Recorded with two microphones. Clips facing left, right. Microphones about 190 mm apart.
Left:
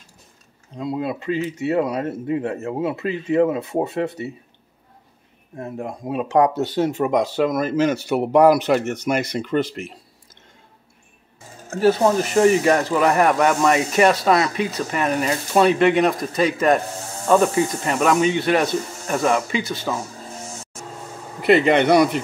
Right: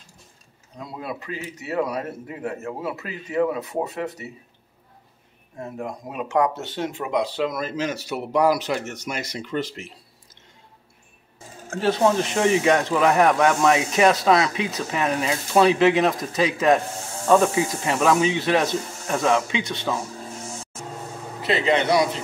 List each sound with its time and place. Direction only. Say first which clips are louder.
0.7 s speech: left 8 dB; 25° left (ahead or behind)
5.8 s speech: left 5 dB; 30° left (ahead or behind); by 9.9 s 55° left (ahead or behind)
11.7 s speech: left 3 dB; 5° left (ahead or behind)
21.4 s a man's voice: left 6 dB; 60° left (ahead or behind)